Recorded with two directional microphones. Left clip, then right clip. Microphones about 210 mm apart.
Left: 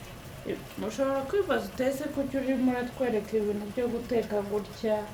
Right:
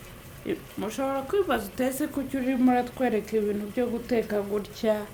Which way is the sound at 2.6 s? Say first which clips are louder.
Right 5 dB; 40° right (ahead or behind).